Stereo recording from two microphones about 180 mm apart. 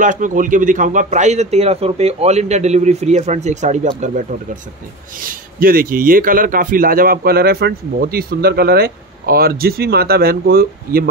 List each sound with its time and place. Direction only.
0.0 s a man's voice: 45° right (ahead or behind)
5.2 s speech: 50° right (ahead or behind)